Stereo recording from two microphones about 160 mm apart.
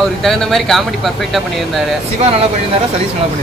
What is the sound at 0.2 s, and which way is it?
Speech, 5° left (ahead or behind).